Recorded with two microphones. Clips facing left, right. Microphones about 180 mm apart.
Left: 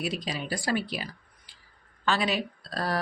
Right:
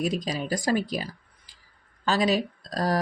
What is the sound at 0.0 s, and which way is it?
Speech, 45° right (ahead or behind).